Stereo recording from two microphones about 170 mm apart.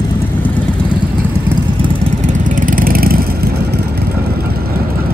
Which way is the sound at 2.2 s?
50° right (ahead or behind).